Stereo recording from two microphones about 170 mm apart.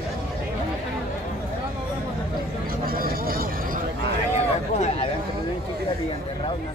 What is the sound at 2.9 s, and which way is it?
Vehicle, 60° right (ahead or behind).